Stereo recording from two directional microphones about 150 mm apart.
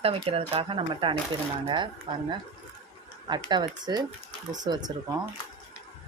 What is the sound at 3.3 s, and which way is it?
Speech, 30° right (ahead or behind).